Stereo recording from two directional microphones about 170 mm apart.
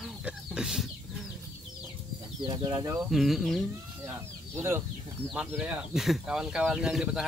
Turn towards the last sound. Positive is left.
turn(degrees=-5)  # may be behind; listen again after turning